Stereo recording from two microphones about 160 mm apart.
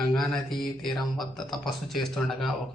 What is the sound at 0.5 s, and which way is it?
A man's voice, centre (ahead or behind).